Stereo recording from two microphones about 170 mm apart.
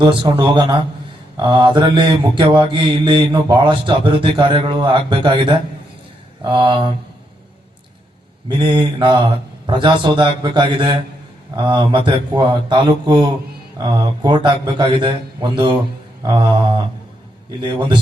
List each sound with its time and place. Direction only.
0.0 s mantra: 25° right (ahead or behind)
8.4 s mantra: 30° right (ahead or behind)